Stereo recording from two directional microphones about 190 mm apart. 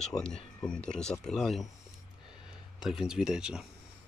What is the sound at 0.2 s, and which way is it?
Speech, 5° left (ahead or behind).